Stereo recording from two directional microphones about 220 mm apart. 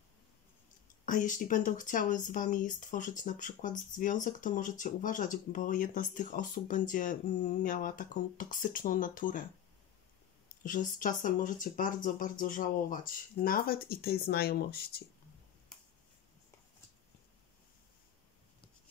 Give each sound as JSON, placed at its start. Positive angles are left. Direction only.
{"t": 1.0, "sound": "speech", "side_deg": 35}
{"t": 10.6, "sound": "speech", "side_deg": 35}